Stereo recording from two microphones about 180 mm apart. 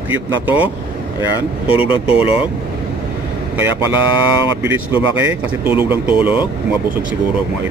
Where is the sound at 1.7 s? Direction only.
30° left (ahead or behind).